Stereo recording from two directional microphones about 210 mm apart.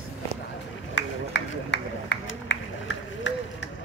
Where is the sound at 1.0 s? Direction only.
55° left (ahead or behind).